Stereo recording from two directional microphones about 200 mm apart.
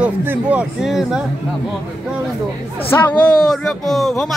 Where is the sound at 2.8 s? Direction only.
10° left (ahead or behind).